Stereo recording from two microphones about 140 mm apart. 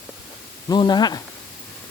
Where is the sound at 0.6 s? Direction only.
30° left (ahead or behind).